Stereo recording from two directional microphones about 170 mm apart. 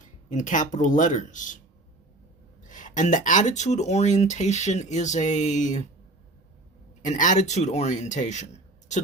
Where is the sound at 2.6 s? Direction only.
50° left (ahead or behind).